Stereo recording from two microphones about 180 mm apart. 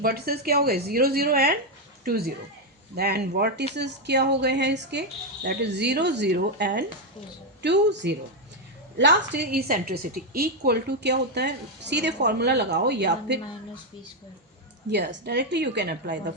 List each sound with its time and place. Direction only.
0.0 s a woman's voice: 55° right (ahead or behind)
14.8 s a woman's voice: 70° right (ahead or behind)